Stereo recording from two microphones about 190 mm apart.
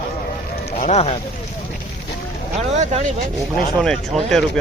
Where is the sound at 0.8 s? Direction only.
35° left (ahead or behind).